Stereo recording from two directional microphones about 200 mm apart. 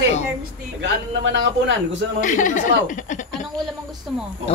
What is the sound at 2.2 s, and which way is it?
Speech, 40° left (ahead or behind).